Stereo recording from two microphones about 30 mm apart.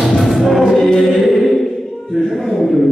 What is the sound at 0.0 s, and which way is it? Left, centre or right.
Music, centre.